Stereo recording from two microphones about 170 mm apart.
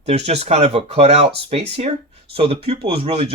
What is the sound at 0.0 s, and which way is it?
Speech, 40° right (ahead or behind).